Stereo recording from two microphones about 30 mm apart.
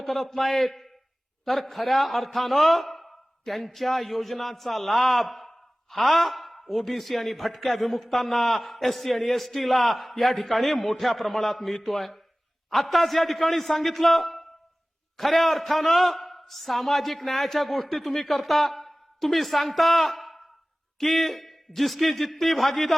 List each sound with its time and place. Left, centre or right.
0.0 s a man's voice: centre